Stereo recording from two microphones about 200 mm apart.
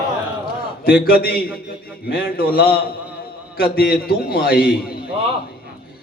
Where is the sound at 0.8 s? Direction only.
50° left (ahead or behind).